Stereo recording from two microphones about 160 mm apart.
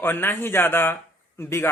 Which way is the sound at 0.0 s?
15° left (ahead or behind).